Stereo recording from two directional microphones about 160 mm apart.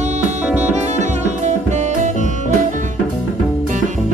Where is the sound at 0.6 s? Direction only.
45° right (ahead or behind).